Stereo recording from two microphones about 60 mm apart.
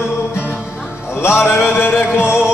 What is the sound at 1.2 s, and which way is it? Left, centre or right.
Music, left.